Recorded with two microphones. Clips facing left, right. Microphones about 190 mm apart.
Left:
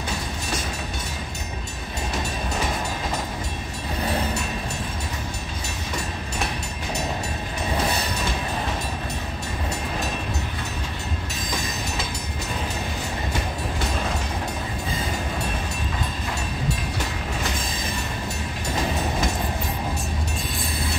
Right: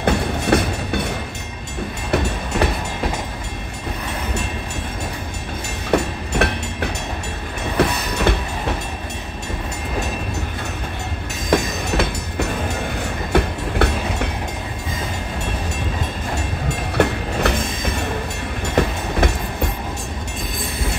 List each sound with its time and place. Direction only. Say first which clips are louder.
0.0 s train: right 11 dB; 60° right (ahead or behind)
5.9 s train: right 14 dB; 65° right (ahead or behind)
11.5 s train: right 12 dB; 65° right (ahead or behind)
16.9 s train: right 10 dB; 65° right (ahead or behind)
18.8 s train: right 6 dB; 65° right (ahead or behind)